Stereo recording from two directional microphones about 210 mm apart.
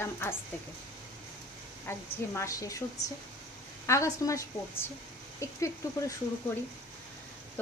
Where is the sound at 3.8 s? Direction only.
15° left (ahead or behind).